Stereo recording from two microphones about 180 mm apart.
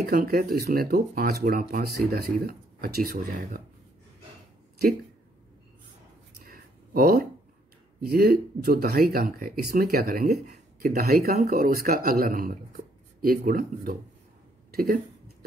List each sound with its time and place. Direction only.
0.0 s speech: 55° right (ahead or behind)
6.4 s a sound: 55° right (ahead or behind)
8.0 s speech: 55° right (ahead or behind)
10.3 s speech: 40° right (ahead or behind); by 15.0 s 55° right (ahead or behind)